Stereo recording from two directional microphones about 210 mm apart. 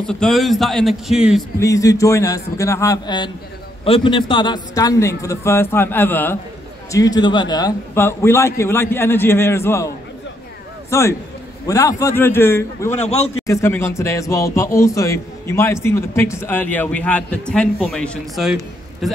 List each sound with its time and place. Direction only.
0.0 s a man's voice: 5° left (ahead or behind)
1.6 s speech: 15° left (ahead or behind)
10.9 s a man's voice: 15° left (ahead or behind)
13.0 s a man's voice: 30° left (ahead or behind)
13.5 s speech: 10° left (ahead or behind)